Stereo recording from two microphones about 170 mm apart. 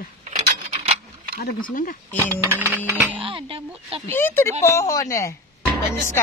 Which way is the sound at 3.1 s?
30° right (ahead or behind).